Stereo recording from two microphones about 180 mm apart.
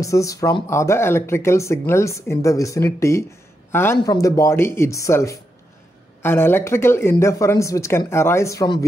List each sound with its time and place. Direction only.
0.0 s speech: 20° left (ahead or behind)